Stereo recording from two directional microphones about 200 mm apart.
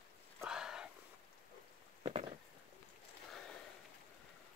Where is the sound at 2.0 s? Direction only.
30° right (ahead or behind).